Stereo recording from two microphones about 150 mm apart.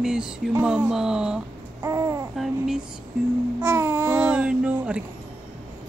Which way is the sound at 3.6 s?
15° right (ahead or behind).